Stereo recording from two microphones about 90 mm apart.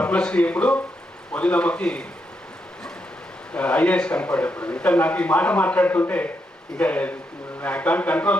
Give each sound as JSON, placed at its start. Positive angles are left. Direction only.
{"t": 0.0, "sound": "a man's voice", "side_deg": 10}
{"t": 3.5, "sound": "a man's voice", "side_deg": 15}